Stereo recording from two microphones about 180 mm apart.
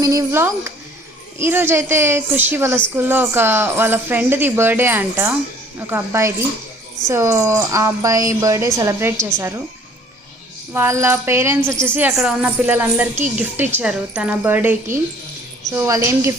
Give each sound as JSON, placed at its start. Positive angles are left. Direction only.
{"t": 0.0, "sound": "a woman's voice", "side_deg": -20}
{"t": 10.7, "sound": "a woman's voice", "side_deg": -15}